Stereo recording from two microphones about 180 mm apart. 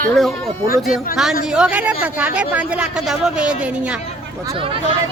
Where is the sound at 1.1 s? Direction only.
Centre (ahead or behind).